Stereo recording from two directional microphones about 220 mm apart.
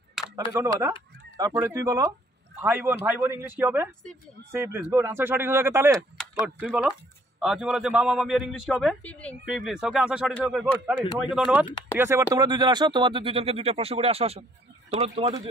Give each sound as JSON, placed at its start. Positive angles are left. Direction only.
{"t": 0.2, "sound": "a sound", "side_deg": 0}
{"t": 0.5, "sound": "speech", "side_deg": -15}
{"t": 7.3, "sound": "a man's voice", "side_deg": -5}